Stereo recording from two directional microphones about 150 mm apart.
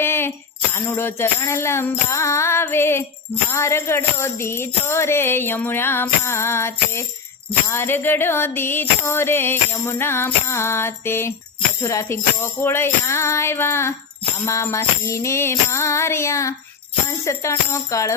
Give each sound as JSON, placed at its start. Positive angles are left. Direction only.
{"t": 0.0, "sound": "music", "side_deg": 15}